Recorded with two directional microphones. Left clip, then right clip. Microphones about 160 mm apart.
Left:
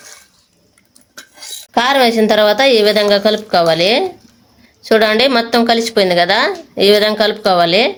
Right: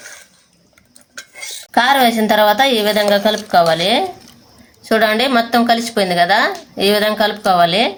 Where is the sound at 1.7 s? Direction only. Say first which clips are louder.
Left 1 dB; 40° left (ahead or behind).